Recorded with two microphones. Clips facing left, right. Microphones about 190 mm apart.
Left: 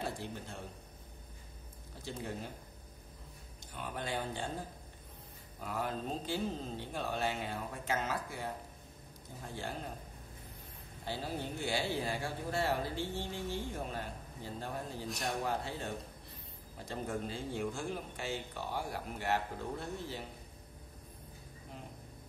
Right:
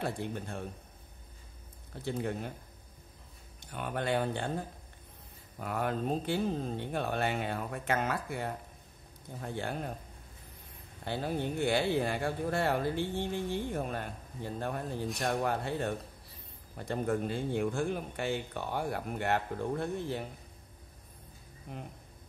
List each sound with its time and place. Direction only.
0.0 s speech: 60° right (ahead or behind)
2.0 s speech: 60° right (ahead or behind)
3.7 s speech: 60° right (ahead or behind)
5.6 s speech: 60° right (ahead or behind)
11.1 s speech: 60° right (ahead or behind)